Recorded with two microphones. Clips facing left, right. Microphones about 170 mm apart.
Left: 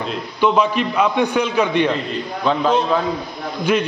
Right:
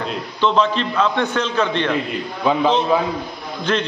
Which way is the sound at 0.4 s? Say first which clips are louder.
Left 1 dB; 10° left (ahead or behind).